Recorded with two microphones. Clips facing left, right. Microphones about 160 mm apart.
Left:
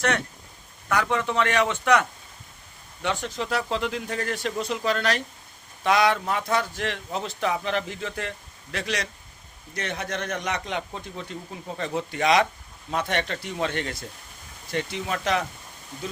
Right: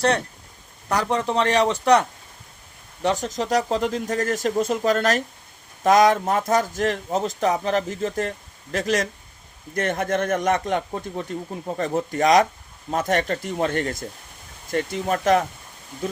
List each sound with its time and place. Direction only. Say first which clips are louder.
0.9 s a man's voice: right 2 dB; 35° right (ahead or behind)